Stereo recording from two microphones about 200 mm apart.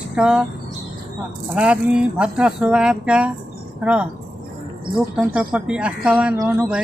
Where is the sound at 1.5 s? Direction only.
5° right (ahead or behind).